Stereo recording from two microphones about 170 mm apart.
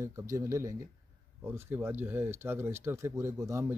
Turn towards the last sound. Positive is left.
turn(degrees=-15)  # may be behind; listen again after turning